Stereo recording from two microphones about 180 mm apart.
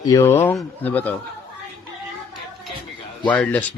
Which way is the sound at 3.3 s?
10° left (ahead or behind).